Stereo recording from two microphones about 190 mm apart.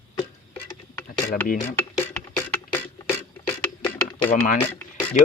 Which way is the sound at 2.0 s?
15° left (ahead or behind).